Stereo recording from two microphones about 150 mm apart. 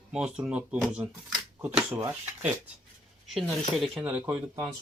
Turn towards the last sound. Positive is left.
turn(degrees=-15)  # may be behind; listen again after turning